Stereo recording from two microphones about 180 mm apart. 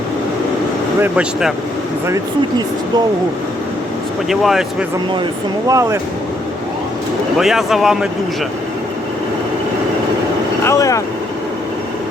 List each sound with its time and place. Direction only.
1.0 s speech: 5° right (ahead or behind)
4.3 s speech: centre (ahead or behind)
5.6 s speech: 20° right (ahead or behind)
7.3 s speech: centre (ahead or behind)
10.6 s vehicle: 15° left (ahead or behind)